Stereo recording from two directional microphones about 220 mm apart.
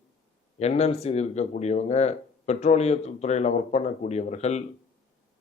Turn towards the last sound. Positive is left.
turn(degrees=30)  # may be behind; listen again after turning